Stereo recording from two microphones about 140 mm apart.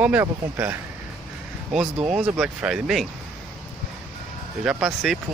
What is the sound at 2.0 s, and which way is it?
Speech, 5° right (ahead or behind).